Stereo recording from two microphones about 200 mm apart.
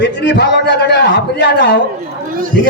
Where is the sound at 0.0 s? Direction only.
55° left (ahead or behind).